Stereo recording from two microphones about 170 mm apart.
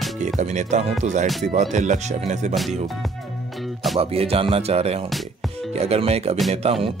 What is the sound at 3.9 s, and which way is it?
Music, 35° right (ahead or behind).